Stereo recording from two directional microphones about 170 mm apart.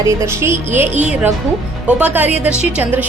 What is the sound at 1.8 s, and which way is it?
Speech, 10° right (ahead or behind).